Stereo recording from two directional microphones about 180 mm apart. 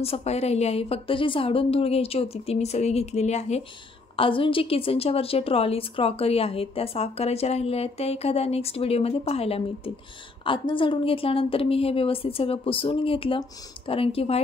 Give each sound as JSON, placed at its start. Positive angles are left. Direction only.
{"t": 0.0, "sound": "a woman's voice", "side_deg": 35}